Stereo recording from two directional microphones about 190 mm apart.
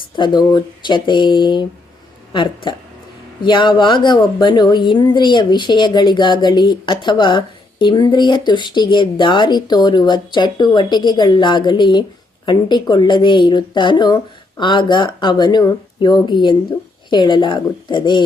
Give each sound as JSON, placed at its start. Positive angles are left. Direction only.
{"t": 0.2, "sound": "speech", "side_deg": 20}